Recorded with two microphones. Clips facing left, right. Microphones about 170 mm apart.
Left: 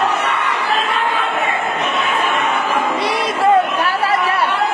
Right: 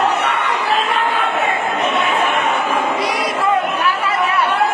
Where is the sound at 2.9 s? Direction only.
30° left (ahead or behind).